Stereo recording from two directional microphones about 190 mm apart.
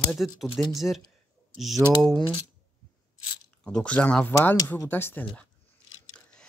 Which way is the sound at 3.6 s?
5° left (ahead or behind).